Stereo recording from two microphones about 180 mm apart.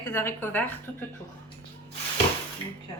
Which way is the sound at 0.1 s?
15° left (ahead or behind).